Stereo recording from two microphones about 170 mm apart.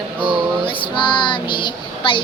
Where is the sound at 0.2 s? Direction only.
30° left (ahead or behind).